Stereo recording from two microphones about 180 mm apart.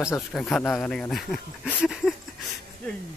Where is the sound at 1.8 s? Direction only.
Centre (ahead or behind).